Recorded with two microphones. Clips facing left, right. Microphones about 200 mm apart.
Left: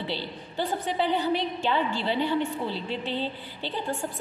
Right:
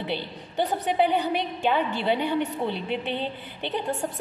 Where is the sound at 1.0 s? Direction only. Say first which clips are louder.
Left 2 dB; 15° right (ahead or behind).